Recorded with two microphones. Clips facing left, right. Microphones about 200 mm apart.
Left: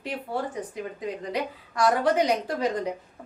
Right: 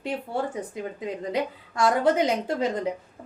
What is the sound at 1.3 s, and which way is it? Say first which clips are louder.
A woman's voice: right 2 dB; 25° right (ahead or behind).